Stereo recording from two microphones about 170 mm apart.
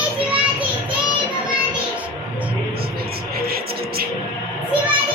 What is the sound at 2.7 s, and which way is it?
Music, 65° right (ahead or behind).